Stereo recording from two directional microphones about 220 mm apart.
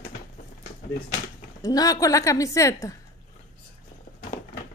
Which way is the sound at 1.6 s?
15° left (ahead or behind).